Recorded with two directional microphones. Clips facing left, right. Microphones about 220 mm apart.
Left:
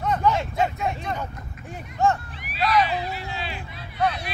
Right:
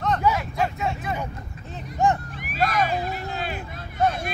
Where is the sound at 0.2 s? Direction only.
10° right (ahead or behind).